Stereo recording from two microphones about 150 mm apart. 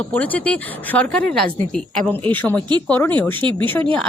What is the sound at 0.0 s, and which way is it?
A woman's voice, 10° left (ahead or behind).